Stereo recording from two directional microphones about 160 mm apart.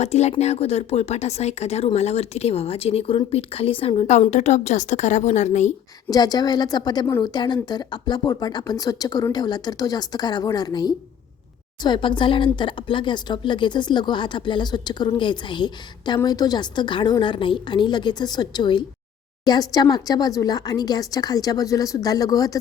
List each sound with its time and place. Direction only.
0.0 s speech: 45° left (ahead or behind)
6.1 s speech: 25° left (ahead or behind)